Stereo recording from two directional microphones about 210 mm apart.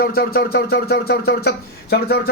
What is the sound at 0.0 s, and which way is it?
Speech, 45° left (ahead or behind).